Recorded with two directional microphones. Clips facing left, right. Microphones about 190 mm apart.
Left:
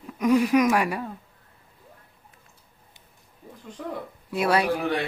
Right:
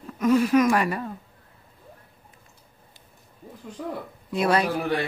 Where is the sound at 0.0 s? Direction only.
15° left (ahead or behind).